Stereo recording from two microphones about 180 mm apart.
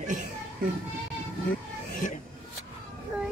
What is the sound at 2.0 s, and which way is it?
Rub, 45° left (ahead or behind).